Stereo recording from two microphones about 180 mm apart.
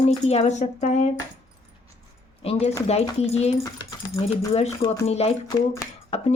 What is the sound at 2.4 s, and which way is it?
A woman's voice, 35° left (ahead or behind).